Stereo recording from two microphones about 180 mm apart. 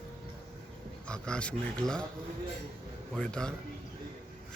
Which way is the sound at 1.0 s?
5° left (ahead or behind).